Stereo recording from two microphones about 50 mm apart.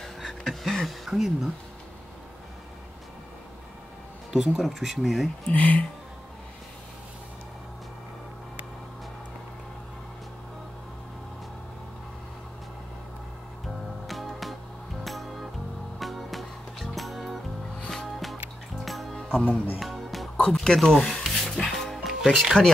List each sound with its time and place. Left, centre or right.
0.0 s speech: centre
4.3 s speech: centre
5.5 s speech: left
14.0 s music: centre
20.3 s speech: centre
21.2 s music: centre